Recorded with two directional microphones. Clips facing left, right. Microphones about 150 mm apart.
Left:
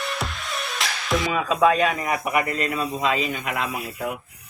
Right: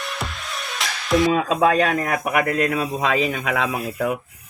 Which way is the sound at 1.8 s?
85° right.